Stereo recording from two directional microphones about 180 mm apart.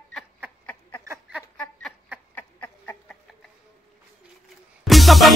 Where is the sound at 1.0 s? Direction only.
15° right (ahead or behind).